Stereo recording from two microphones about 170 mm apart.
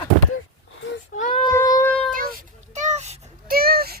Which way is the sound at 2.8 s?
45° right (ahead or behind).